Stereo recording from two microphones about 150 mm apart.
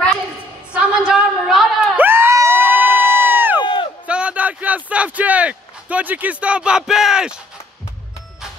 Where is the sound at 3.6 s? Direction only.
35° left (ahead or behind).